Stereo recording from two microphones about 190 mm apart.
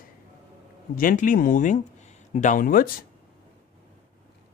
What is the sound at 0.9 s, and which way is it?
Speech, 45° left (ahead or behind).